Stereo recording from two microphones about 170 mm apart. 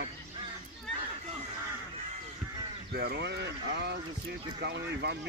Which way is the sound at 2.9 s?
70° right (ahead or behind).